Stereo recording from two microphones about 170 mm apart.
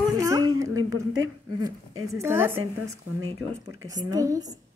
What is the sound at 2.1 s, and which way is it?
A woman's voice, 15° right (ahead or behind).